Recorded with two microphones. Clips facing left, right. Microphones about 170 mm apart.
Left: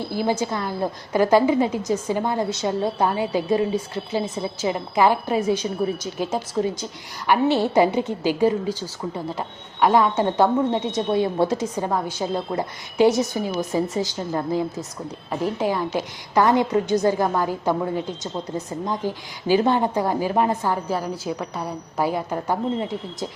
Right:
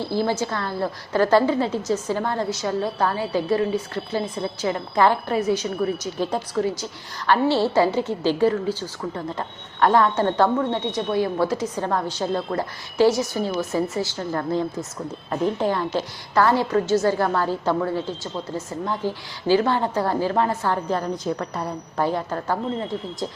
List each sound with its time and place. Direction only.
0.0 s a woman's voice: 15° left (ahead or behind)
5.4 s a woman's voice: 25° left (ahead or behind)
12.2 s a woman's voice: 15° left (ahead or behind)